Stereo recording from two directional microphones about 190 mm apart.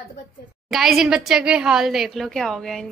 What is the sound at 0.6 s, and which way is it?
A woman's voice, centre (ahead or behind).